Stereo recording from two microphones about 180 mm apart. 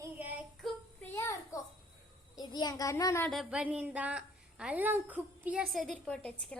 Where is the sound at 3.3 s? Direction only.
Centre (ahead or behind).